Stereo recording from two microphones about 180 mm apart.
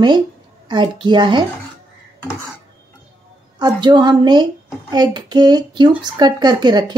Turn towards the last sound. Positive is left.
turn(degrees=-25)  # may be behind; listen again after turning